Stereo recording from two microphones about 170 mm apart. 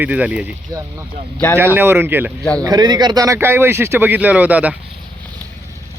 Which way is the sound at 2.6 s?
25° right (ahead or behind).